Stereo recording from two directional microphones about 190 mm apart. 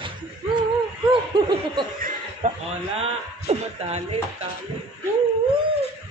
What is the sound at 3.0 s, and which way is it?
A man's voice, 35° right (ahead or behind).